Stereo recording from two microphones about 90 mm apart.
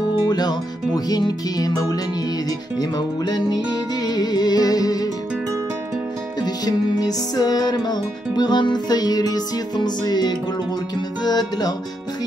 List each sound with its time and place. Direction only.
0.3 s music: 50° left (ahead or behind)
6.4 s music: 45° left (ahead or behind)